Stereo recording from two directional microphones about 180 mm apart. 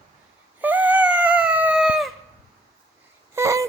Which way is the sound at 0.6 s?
10° right (ahead or behind).